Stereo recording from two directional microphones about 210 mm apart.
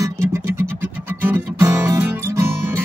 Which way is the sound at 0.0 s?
15° right (ahead or behind).